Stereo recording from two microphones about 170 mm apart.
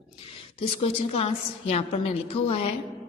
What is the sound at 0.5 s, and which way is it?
A woman's voice, 30° left (ahead or behind).